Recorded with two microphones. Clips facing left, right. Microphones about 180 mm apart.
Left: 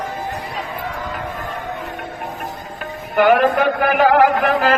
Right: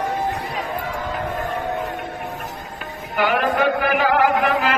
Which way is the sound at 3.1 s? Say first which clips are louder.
Left 6 dB; 50° left (ahead or behind).